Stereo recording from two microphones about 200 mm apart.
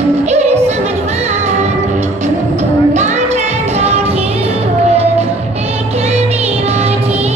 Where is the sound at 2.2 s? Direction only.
35° right (ahead or behind).